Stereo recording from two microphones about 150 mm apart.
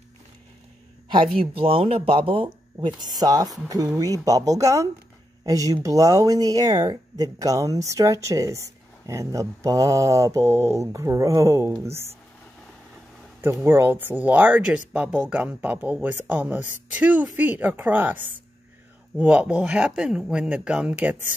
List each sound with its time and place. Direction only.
1.0 s speech: 35° right (ahead or behind)
3.2 s speech: 25° right (ahead or behind)
13.4 s speech: 15° right (ahead or behind)